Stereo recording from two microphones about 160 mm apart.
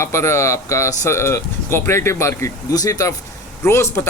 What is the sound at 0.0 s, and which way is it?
Speech, 15° left (ahead or behind).